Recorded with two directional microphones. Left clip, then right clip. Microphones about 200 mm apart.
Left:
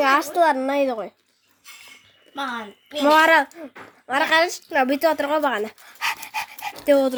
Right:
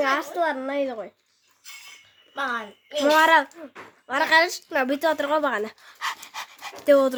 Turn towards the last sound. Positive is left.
turn(degrees=-10)  # may be behind; listen again after turning